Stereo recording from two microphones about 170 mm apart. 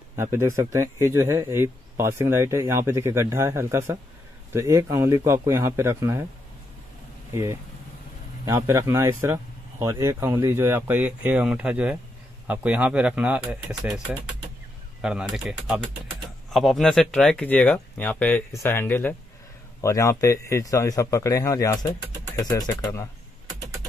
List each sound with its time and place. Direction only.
0.1 s speech: 15° right (ahead or behind)
8.5 s speech: 15° right (ahead or behind); by 23.0 s 20° left (ahead or behind)